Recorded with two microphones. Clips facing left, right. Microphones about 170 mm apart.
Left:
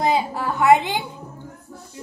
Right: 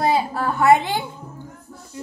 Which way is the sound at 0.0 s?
20° left (ahead or behind).